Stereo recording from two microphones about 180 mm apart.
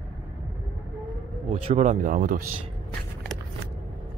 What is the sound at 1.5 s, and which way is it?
Speech, 35° right (ahead or behind).